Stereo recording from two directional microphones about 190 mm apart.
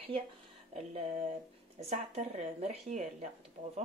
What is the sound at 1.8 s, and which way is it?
Speech, 35° right (ahead or behind).